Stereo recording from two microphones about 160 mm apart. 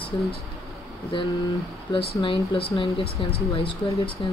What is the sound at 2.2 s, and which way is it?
Speech, 35° left (ahead or behind).